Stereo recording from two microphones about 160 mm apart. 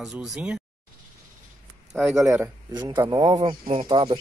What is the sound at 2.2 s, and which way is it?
Speech, 15° right (ahead or behind).